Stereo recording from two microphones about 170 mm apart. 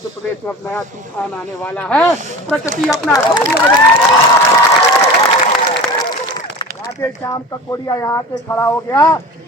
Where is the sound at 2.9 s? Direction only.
20° left (ahead or behind).